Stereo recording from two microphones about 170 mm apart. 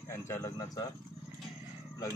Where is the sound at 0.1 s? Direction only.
15° left (ahead or behind).